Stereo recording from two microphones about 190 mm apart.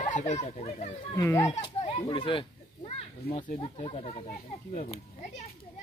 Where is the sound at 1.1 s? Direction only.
15° left (ahead or behind).